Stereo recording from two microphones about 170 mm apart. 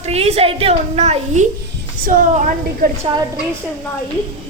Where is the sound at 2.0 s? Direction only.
50° right (ahead or behind).